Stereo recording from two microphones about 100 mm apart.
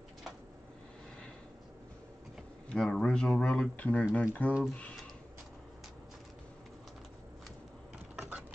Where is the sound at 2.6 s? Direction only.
5° left (ahead or behind).